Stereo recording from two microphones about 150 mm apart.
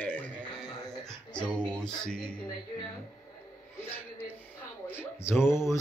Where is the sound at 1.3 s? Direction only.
10° left (ahead or behind).